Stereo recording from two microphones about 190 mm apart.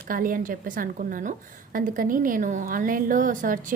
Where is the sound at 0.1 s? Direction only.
45° right (ahead or behind).